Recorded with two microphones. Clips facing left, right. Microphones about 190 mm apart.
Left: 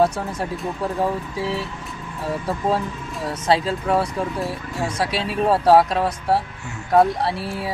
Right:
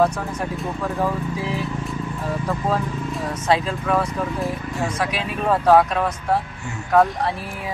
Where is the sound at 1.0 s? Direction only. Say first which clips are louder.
Even; 30° left (ahead or behind).